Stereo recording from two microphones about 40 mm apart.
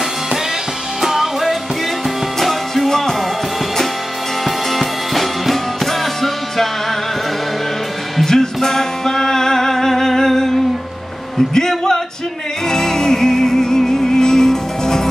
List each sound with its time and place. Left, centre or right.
1.0 s music: centre
2.4 s music: centre
4.5 s music: centre
8.2 s music: centre